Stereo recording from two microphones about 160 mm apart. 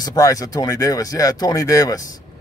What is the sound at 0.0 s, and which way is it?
Speech, 20° left (ahead or behind).